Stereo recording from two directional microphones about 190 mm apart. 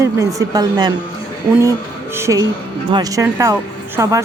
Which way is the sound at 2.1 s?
15° right (ahead or behind).